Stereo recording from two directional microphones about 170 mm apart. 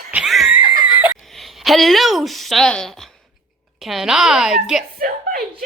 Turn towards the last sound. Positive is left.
turn(degrees=-60)  # may be behind; listen again after turning